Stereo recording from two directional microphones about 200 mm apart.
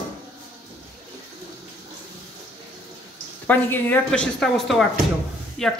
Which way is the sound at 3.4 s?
10° left (ahead or behind).